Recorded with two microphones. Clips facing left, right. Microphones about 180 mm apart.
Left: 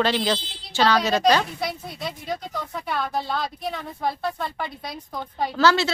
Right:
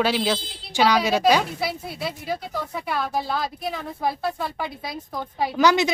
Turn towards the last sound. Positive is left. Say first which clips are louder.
# right 1 dB
turn(degrees=-15)  # may be behind; listen again after turning